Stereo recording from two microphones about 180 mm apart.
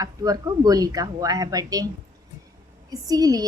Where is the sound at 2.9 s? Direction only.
20° right (ahead or behind).